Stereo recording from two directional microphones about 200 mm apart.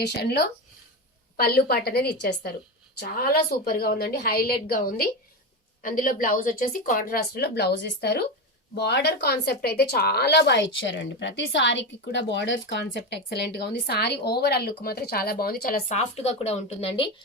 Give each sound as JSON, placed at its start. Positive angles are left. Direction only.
{"t": 0.0, "sound": "speech", "side_deg": 55}
{"t": 16.0, "sound": "speech", "side_deg": 30}